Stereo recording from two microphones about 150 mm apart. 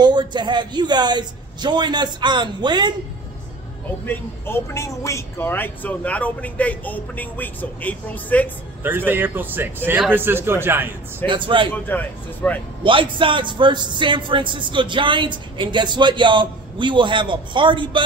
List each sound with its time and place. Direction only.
0.0 s a man's voice: 30° right (ahead or behind)
4.0 s speech: 15° left (ahead or behind)
8.8 s speech: 15° right (ahead or behind)
11.2 s speech: 35° right (ahead or behind)
11.7 s speech: 10° left (ahead or behind)
12.8 s speech: 35° right (ahead or behind)